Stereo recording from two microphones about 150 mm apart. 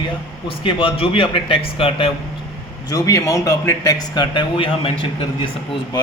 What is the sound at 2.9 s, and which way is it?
A man's voice, 20° left (ahead or behind).